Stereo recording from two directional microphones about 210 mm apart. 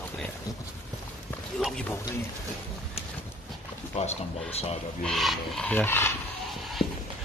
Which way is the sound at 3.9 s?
30° left (ahead or behind).